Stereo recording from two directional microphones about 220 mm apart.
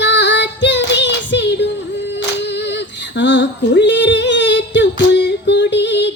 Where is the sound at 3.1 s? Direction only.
55° left (ahead or behind).